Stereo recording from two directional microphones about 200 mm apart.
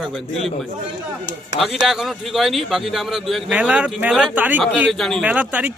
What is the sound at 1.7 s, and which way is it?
A man's voice, centre (ahead or behind).